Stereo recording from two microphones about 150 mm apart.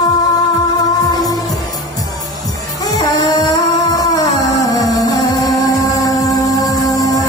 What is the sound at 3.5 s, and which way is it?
Music, 25° left (ahead or behind).